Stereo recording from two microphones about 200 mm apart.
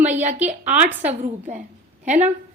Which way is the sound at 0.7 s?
10° right (ahead or behind).